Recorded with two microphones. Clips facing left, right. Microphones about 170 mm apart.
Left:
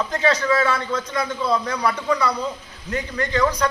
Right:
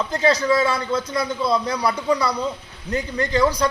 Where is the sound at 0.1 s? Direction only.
35° right (ahead or behind).